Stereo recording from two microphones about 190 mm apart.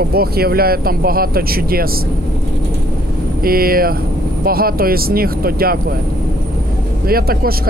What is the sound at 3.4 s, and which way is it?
Speech, 50° right (ahead or behind).